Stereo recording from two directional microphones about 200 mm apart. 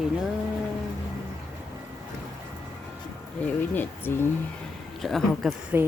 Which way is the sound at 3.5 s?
10° left (ahead or behind).